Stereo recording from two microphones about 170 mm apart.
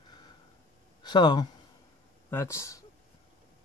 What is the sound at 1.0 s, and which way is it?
Speech, 25° left (ahead or behind).